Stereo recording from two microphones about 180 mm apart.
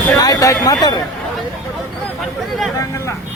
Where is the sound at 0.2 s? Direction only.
20° left (ahead or behind).